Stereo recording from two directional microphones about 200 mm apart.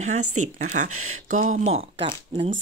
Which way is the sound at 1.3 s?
40° right (ahead or behind).